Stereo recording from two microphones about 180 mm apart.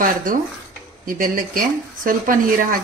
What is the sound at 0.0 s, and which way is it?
Speech, 50° right (ahead or behind).